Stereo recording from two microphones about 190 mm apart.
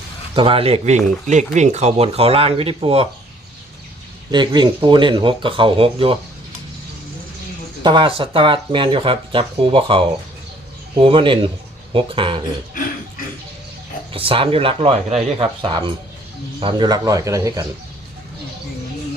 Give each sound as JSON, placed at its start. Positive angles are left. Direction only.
{"t": 0.3, "sound": "speech", "side_deg": -30}
{"t": 4.3, "sound": "speech", "side_deg": -25}
{"t": 7.8, "sound": "speech", "side_deg": -25}
{"t": 14.1, "sound": "speech", "side_deg": -30}